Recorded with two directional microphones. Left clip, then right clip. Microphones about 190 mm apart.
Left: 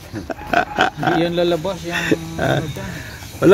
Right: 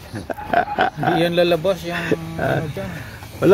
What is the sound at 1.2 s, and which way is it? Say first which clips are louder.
Speech: right 4 dB; 60° right (ahead or behind).